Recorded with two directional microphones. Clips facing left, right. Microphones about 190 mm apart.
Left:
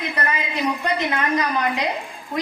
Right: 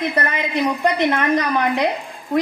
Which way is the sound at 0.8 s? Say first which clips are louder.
Right 5 dB; 55° right (ahead or behind).